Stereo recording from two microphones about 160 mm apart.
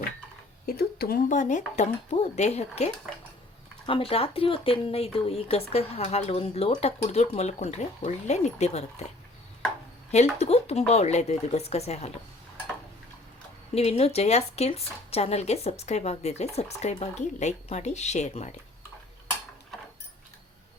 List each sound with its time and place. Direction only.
0.6 s speech: 70° left (ahead or behind); by 9.1 s 40° left (ahead or behind)
10.4 s speech: 40° left (ahead or behind)
13.7 s speech: 40° left (ahead or behind)